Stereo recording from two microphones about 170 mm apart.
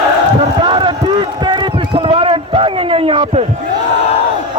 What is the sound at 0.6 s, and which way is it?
Run, 30° right (ahead or behind).